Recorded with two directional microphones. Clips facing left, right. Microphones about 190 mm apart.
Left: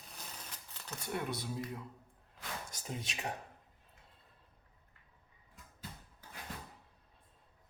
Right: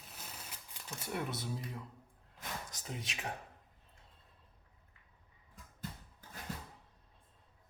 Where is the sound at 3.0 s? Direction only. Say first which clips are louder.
Left 2 dB; 30° left (ahead or behind).